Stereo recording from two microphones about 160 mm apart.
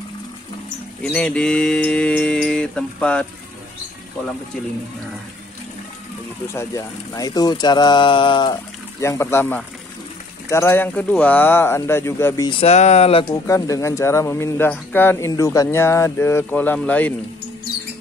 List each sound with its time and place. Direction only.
1.1 s speech: 5° left (ahead or behind)
6.5 s speech: 20° left (ahead or behind)
9.0 s speech: 15° left (ahead or behind)
12.4 s speech: 35° left (ahead or behind)
13.3 s speech: 20° left (ahead or behind)